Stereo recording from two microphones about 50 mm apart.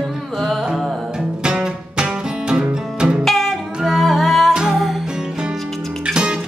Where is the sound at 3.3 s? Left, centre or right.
Centre.